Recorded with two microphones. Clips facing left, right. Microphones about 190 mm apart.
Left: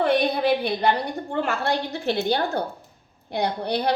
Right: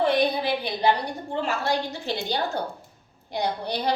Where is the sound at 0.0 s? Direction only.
60° left (ahead or behind).